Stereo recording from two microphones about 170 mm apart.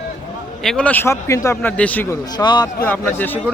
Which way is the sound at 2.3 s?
25° left (ahead or behind).